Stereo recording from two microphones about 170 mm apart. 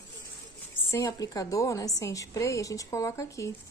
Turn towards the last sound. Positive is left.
turn(degrees=15)  # may be behind; listen again after turning